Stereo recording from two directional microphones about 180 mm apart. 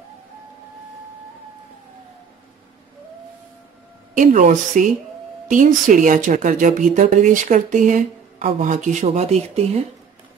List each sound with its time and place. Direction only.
4.1 s speech: 45° right (ahead or behind)